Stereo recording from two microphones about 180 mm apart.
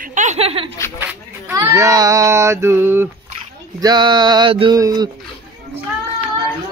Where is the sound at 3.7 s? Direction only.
25° right (ahead or behind).